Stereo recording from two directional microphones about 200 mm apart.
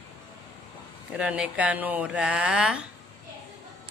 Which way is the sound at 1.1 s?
5° right (ahead or behind).